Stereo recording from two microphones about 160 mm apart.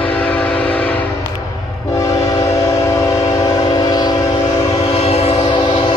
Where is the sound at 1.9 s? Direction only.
20° left (ahead or behind).